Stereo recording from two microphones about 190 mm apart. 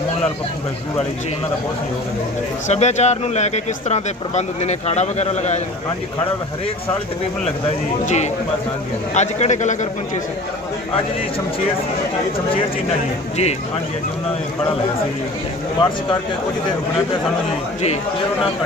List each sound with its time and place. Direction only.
2.6 s speech: 35° left (ahead or behind)
8.0 s speech: 35° left (ahead or behind)
13.3 s speech: 35° left (ahead or behind)